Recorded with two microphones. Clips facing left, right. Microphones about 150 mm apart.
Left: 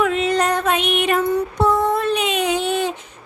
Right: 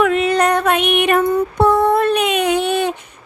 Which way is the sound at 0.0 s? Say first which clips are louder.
Right 4 dB; 60° right (ahead or behind).